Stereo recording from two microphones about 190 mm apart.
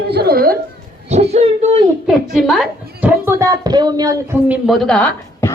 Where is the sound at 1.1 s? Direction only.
35° right (ahead or behind).